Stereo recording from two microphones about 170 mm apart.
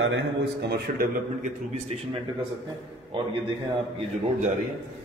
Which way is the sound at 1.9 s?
40° right (ahead or behind).